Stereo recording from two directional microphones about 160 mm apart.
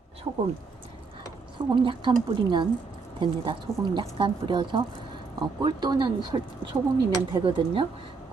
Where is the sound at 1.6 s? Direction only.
30° right (ahead or behind).